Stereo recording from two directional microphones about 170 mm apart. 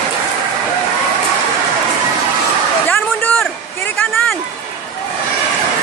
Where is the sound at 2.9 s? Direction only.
10° left (ahead or behind).